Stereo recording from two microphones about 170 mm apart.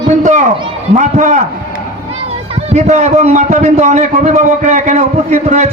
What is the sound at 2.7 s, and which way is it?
A man's voice, 40° right (ahead or behind).